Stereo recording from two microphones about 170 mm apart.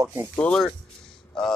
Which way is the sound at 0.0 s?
15° right (ahead or behind).